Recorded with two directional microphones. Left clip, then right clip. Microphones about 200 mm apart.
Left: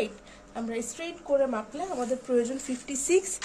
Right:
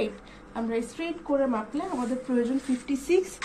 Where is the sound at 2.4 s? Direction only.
45° left (ahead or behind).